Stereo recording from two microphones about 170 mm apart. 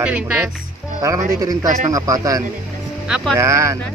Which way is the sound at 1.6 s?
45° right (ahead or behind).